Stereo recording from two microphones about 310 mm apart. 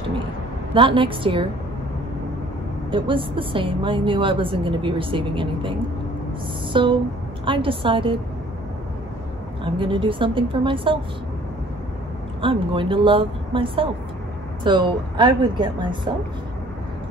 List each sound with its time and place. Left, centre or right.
0.7 s a woman's voice: centre
2.9 s a woman's voice: centre
9.7 s a woman's voice: centre
12.4 s a woman's voice: centre